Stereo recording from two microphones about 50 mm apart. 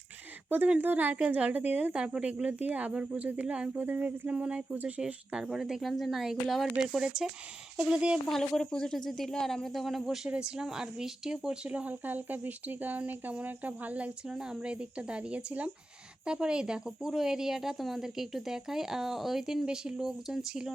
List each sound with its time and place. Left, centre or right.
0.8 s speech: right
1.9 s speech: centre
3.8 s speech: right; by 5.5 s centre
5.5 s speech: centre
8.3 s speech: centre
10.2 s speech: right
11.7 s speech: right
14.3 s speech: centre